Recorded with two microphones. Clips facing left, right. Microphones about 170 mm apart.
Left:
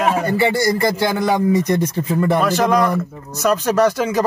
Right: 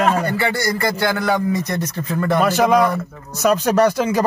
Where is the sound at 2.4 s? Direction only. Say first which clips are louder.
Right 5 dB; 5° right (ahead or behind).